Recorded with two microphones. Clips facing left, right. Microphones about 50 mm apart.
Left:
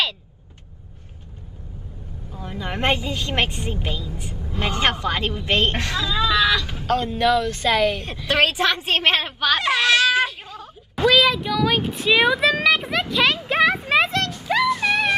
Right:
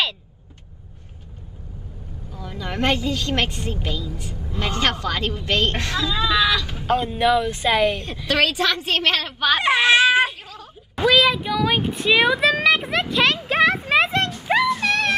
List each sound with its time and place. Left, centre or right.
2.3 s a woman's voice: left
5.8 s speech: centre
6.9 s speech: centre
8.3 s a woman's voice: left
9.6 s a child's voice: right
11.0 s a sound: centre
14.6 s music: centre